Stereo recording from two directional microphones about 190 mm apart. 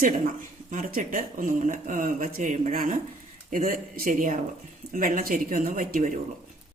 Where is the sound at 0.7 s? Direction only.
45° right (ahead or behind).